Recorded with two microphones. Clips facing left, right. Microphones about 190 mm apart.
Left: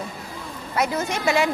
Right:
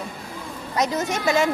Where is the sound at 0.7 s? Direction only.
20° right (ahead or behind).